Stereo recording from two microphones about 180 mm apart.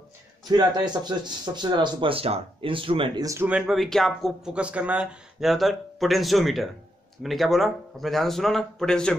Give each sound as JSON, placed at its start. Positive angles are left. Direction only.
{"t": 0.5, "sound": "speech", "side_deg": -25}
{"t": 3.3, "sound": "speech", "side_deg": -10}